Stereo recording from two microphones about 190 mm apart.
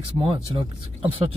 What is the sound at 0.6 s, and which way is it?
Speech, 30° right (ahead or behind).